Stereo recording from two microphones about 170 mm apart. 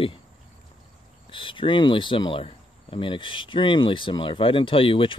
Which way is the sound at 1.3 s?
30° left (ahead or behind).